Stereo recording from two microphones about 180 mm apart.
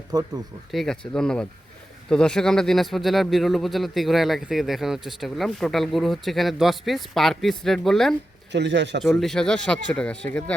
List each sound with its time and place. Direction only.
0.1 s speech: 20° right (ahead or behind)
0.7 s speech: centre (ahead or behind)
8.5 s a man's voice: 75° right (ahead or behind)
9.0 s speech: centre (ahead or behind)